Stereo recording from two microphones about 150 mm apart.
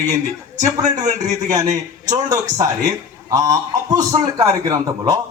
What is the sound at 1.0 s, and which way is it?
Speech, 55° right (ahead or behind).